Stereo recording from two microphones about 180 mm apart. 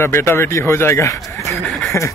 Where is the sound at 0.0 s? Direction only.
15° left (ahead or behind).